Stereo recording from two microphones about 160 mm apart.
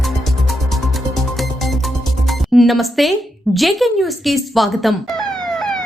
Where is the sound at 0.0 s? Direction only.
Centre (ahead or behind).